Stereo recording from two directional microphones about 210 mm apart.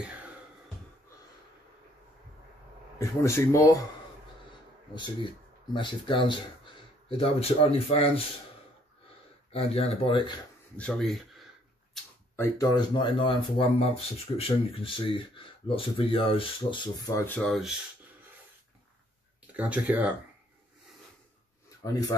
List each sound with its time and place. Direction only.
3.0 s speech: 15° left (ahead or behind)
5.7 s speech: 20° left (ahead or behind)
9.5 s speech: 30° left (ahead or behind)
10.8 s speech: 5° left (ahead or behind)
12.4 s speech: 15° left (ahead or behind); by 17.7 s centre (ahead or behind)
19.5 s speech: 5° right (ahead or behind)
21.8 s speech: 15° left (ahead or behind)